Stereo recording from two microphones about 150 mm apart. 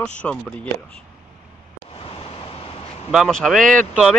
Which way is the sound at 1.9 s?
40° left (ahead or behind).